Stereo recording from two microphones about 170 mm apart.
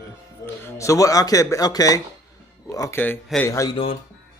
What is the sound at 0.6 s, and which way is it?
Speech, 15° left (ahead or behind).